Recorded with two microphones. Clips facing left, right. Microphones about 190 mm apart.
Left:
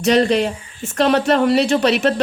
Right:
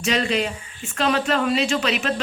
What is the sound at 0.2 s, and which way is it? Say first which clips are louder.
Speech: left 7 dB; 40° left (ahead or behind).